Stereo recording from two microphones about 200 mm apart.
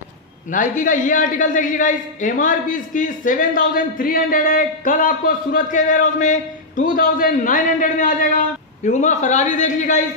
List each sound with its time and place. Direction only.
0.5 s a man's voice: 40° left (ahead or behind)